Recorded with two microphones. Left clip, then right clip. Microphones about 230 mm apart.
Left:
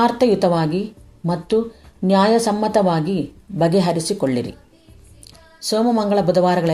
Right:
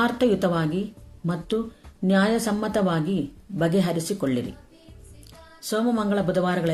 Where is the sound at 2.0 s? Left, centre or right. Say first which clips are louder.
Left 7 dB; centre.